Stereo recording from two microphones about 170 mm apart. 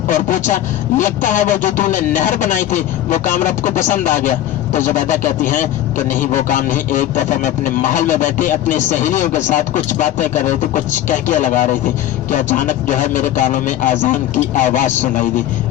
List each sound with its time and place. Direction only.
0.1 s speech: 50° left (ahead or behind)